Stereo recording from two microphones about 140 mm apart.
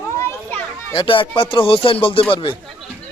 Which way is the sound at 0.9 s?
40° left (ahead or behind).